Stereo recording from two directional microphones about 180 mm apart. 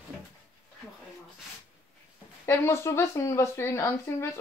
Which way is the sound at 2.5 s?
15° left (ahead or behind).